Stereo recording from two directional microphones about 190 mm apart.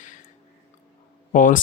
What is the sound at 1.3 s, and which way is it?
Speech, 45° left (ahead or behind).